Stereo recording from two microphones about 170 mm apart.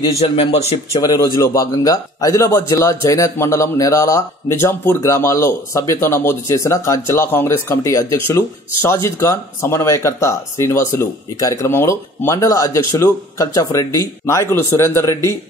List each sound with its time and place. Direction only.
0.4 s speech: 35° left (ahead or behind)
1.1 s speech: 20° left (ahead or behind)